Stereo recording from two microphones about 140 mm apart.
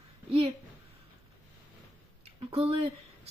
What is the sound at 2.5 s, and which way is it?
Speech, 40° right (ahead or behind).